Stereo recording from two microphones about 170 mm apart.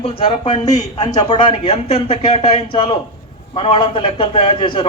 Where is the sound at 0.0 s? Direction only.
35° left (ahead or behind).